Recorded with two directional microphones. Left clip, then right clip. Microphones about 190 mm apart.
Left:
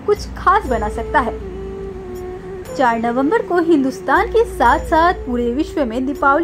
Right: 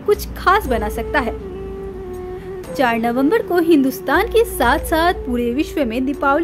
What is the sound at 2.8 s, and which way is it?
A woman's voice, 15° right (ahead or behind).